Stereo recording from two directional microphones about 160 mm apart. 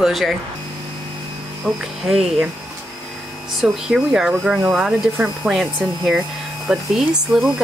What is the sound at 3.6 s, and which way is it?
Speech, 5° right (ahead or behind).